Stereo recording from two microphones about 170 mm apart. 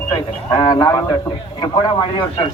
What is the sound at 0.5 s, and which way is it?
Speech, 25° left (ahead or behind).